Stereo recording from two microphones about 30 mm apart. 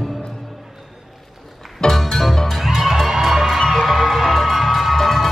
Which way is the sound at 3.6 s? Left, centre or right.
Centre.